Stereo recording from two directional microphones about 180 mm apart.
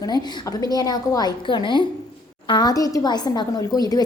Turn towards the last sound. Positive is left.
turn(degrees=20)  # may be behind; listen again after turning